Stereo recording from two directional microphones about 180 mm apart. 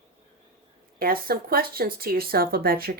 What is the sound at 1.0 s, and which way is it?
Speech, 55° right (ahead or behind).